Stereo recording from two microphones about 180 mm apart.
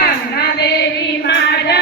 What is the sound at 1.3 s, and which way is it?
Female singing, 65° left (ahead or behind).